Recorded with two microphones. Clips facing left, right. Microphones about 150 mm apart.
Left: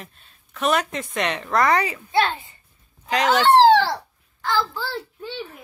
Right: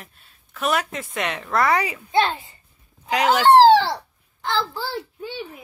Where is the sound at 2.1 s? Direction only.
25° right (ahead or behind).